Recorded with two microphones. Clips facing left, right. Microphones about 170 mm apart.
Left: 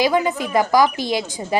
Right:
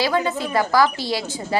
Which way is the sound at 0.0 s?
15° left (ahead or behind).